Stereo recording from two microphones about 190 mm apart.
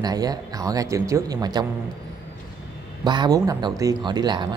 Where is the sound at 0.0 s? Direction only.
20° right (ahead or behind).